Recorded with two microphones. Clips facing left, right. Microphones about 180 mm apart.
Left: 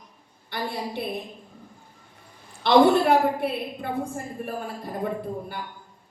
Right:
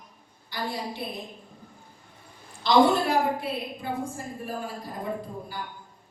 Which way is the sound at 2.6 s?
60° left (ahead or behind).